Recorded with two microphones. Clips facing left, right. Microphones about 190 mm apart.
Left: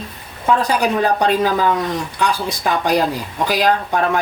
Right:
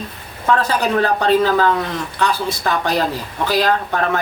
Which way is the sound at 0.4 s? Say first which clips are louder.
Left 1 dB; 15° left (ahead or behind).